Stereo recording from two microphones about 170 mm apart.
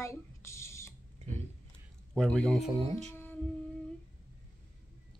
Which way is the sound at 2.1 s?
5° left (ahead or behind).